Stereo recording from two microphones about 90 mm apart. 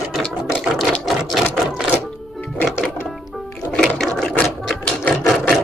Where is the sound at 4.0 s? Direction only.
5° left (ahead or behind).